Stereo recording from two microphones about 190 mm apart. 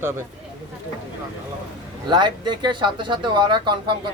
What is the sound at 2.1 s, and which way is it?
Speech, 25° right (ahead or behind).